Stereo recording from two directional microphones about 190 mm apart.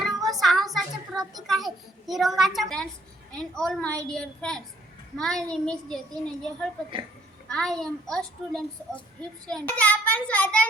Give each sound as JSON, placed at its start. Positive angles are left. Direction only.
{"t": 0.0, "sound": "a sound", "side_deg": 0}
{"t": 1.2, "sound": "a child's voice", "side_deg": -20}
{"t": 2.0, "sound": "a child's voice", "side_deg": 0}